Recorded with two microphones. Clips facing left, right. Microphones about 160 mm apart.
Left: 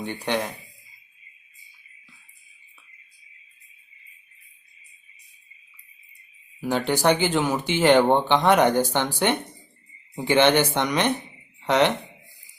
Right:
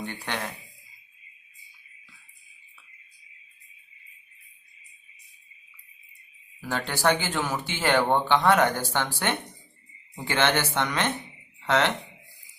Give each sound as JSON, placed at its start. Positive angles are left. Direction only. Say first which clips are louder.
{"t": 0.0, "sound": "speech", "louder": "left 6 dB", "side_deg": 15}
{"t": 6.6, "sound": "speech", "louder": "left 5 dB", "side_deg": 15}